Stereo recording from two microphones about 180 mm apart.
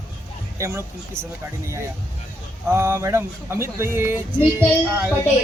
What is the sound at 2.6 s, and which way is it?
A man's voice, 15° right (ahead or behind).